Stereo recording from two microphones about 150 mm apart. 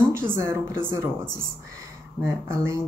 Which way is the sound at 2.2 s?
15° right (ahead or behind).